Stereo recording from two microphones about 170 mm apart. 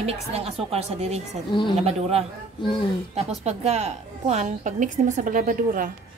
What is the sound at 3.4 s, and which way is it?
A woman's voice, 40° right (ahead or behind).